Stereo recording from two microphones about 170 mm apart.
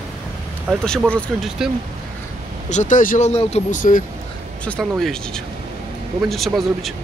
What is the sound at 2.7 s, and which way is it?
Speech, 45° left (ahead or behind).